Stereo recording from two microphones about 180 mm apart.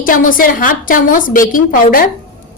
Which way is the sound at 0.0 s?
50° left (ahead or behind).